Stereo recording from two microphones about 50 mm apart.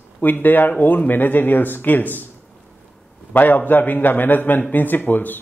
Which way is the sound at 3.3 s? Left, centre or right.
Left.